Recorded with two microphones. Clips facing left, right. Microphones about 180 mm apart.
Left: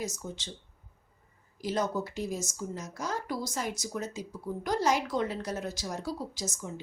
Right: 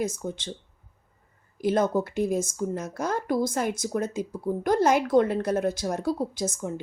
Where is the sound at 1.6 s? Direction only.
55° right (ahead or behind).